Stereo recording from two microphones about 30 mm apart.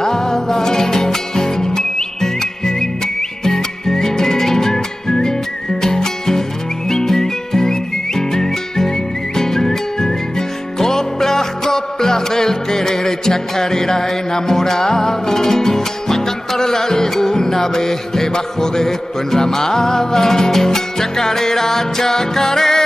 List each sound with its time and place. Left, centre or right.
0.0 s music: centre